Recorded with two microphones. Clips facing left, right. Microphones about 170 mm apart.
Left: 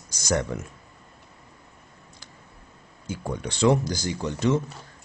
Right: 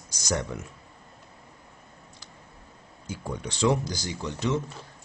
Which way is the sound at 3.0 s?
50° left (ahead or behind).